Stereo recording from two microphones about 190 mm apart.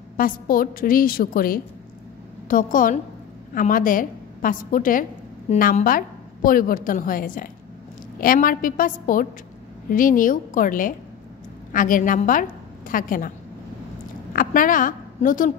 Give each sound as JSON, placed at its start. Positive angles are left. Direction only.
{"t": 0.2, "sound": "a woman's voice", "side_deg": 50}
{"t": 14.3, "sound": "a woman's voice", "side_deg": 45}